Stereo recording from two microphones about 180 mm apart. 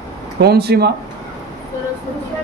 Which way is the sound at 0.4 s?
65° right (ahead or behind).